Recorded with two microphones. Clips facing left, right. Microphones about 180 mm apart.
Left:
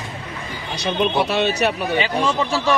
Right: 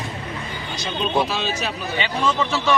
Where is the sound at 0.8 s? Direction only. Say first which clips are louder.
Left 3 dB; 70° left (ahead or behind).